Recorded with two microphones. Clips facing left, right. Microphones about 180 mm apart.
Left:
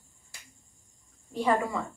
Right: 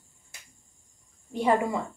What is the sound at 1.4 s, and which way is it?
Speech, 20° right (ahead or behind).